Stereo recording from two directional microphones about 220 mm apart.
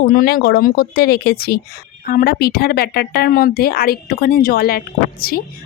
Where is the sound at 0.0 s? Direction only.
40° left (ahead or behind).